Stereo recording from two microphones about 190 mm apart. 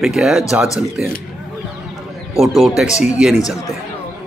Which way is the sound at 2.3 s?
Centre (ahead or behind).